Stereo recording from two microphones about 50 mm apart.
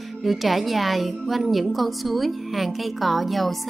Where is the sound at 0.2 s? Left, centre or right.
Centre.